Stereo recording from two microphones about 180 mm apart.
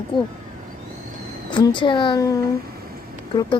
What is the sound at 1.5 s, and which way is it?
Speech, 25° left (ahead or behind).